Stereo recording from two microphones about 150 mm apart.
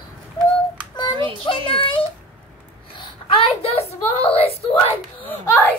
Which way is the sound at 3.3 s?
40° left (ahead or behind).